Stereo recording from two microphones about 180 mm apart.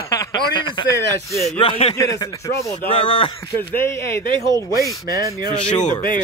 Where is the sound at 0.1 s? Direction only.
20° left (ahead or behind).